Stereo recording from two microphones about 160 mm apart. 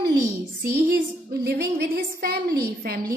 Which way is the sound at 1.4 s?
90° right.